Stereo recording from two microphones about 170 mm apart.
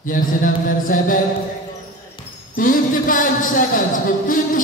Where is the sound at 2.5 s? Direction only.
55° left (ahead or behind).